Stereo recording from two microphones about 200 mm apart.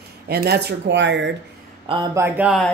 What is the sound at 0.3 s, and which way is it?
Speech, 55° right (ahead or behind).